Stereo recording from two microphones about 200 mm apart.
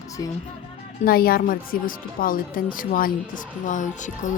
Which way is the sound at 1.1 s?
50° left (ahead or behind).